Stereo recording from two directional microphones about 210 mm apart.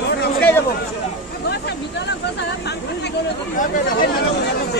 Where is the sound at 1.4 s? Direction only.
50° left (ahead or behind).